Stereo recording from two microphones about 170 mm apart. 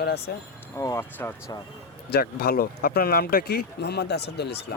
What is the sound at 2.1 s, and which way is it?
Speech, 65° left (ahead or behind).